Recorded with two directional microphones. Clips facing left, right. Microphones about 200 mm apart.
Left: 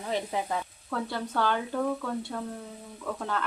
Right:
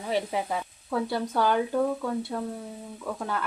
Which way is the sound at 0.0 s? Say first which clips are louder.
Right 3 dB; 15° right (ahead or behind).